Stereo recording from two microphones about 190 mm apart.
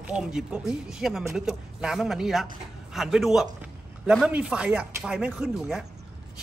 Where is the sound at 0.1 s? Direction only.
5° right (ahead or behind).